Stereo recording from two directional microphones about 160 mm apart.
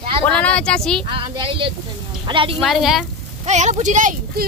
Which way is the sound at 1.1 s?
30° right (ahead or behind).